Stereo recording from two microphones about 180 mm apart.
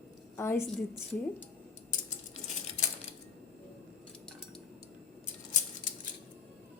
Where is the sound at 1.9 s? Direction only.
40° left (ahead or behind).